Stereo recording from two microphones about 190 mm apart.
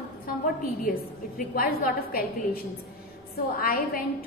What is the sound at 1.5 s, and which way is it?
A woman's voice, 50° left (ahead or behind).